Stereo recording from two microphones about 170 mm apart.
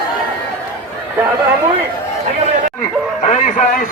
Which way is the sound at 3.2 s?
45° left (ahead or behind).